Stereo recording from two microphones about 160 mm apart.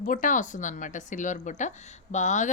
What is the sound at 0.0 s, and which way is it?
A woman's voice, 55° left (ahead or behind).